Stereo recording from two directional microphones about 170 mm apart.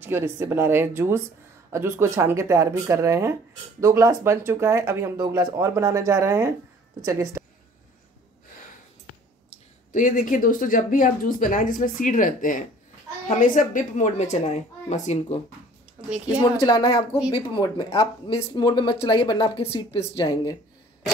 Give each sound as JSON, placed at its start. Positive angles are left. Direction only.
{"t": 0.0, "sound": "speech", "side_deg": -15}
{"t": 9.9, "sound": "speech", "side_deg": 50}
{"t": 16.6, "sound": "speech", "side_deg": 25}